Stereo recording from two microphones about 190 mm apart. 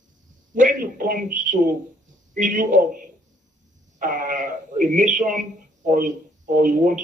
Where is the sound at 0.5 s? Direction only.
45° right (ahead or behind).